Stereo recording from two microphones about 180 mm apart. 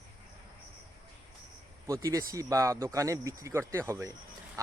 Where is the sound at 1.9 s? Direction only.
20° right (ahead or behind).